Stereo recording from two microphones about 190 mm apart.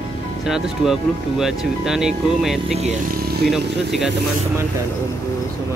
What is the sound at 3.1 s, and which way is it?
Vehicle, 50° right (ahead or behind).